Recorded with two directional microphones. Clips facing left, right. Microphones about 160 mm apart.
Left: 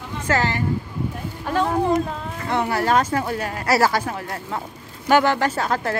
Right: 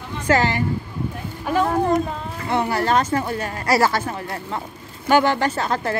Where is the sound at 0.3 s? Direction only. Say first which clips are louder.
Right 3 dB; 15° right (ahead or behind).